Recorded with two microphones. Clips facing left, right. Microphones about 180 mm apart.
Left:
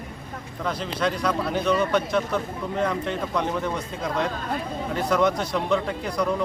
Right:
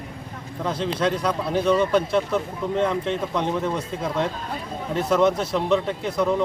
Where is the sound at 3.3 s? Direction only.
Centre (ahead or behind).